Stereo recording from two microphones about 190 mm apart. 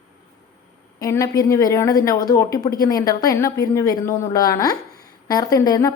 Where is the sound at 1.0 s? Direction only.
15° left (ahead or behind).